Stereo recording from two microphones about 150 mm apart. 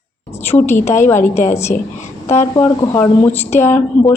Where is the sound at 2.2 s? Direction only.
20° left (ahead or behind).